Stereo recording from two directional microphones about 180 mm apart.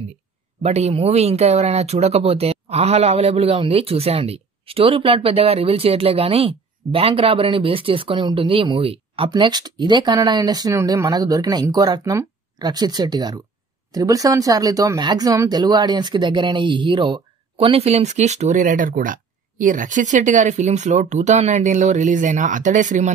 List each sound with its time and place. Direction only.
0.6 s speech: 35° right (ahead or behind)